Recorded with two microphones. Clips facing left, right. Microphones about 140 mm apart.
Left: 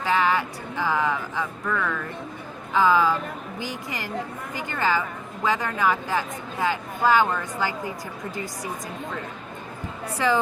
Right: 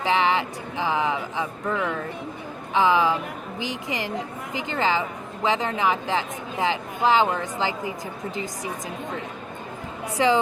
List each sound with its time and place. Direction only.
0.0 s music: 20° right (ahead or behind)
1.6 s a woman's voice: 25° right (ahead or behind)
2.7 s music: 15° right (ahead or behind)
3.6 s a woman's voice: 20° right (ahead or behind)
10.2 s a woman's voice: 20° right (ahead or behind)